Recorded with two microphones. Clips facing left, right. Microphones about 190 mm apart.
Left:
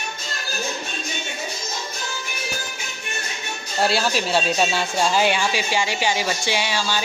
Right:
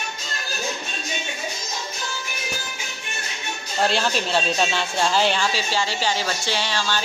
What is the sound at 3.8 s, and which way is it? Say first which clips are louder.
A woman's voice: left 1 dB; 10° left (ahead or behind).